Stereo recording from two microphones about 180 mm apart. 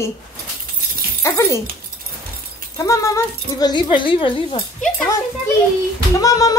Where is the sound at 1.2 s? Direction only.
15° left (ahead or behind).